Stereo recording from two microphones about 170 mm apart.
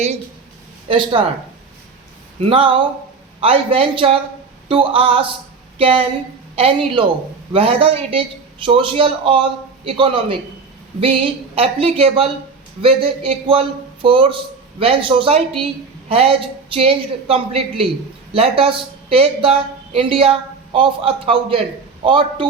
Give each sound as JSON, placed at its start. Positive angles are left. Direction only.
{"t": 0.9, "sound": "speech", "side_deg": -30}
{"t": 2.4, "sound": "a woman's voice", "side_deg": -30}